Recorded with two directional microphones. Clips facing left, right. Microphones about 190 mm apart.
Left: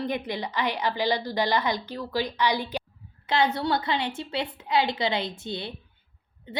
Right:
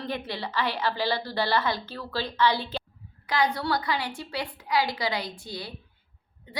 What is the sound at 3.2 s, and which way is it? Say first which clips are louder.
A woman's voice: left 2 dB; 25° left (ahead or behind).